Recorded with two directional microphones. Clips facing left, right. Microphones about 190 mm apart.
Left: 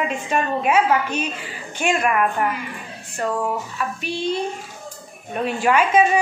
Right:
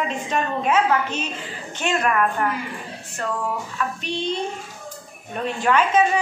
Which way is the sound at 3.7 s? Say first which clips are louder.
Even; 10° left (ahead or behind).